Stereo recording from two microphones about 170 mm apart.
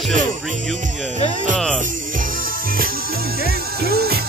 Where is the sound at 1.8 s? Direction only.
50° right (ahead or behind).